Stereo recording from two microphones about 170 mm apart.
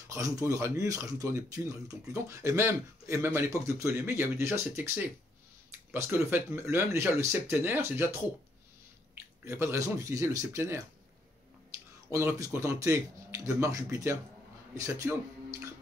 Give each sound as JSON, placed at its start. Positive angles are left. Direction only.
{"t": 0.1, "sound": "speech", "side_deg": -20}
{"t": 9.4, "sound": "speech", "side_deg": -15}
{"t": 12.1, "sound": "speech", "side_deg": -20}